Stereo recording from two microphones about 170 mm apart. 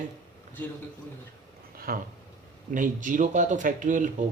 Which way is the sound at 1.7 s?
60° right (ahead or behind).